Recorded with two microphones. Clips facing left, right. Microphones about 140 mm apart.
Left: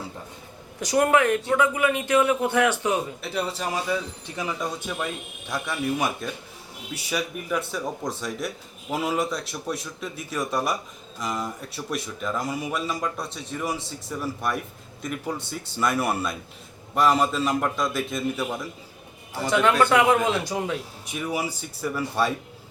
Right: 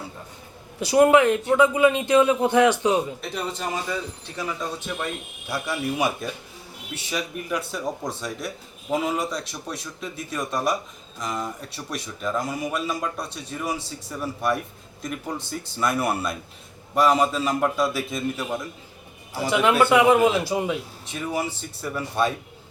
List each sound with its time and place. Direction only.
1.0 s a man's voice: 20° right (ahead or behind)
3.2 s speech: 5° left (ahead or behind)
4.9 s a man's voice: centre (ahead or behind)
21.1 s speech: 5° left (ahead or behind)